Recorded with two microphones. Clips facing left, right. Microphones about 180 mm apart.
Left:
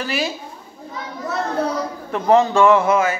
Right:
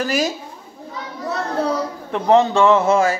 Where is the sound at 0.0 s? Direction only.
40° right (ahead or behind).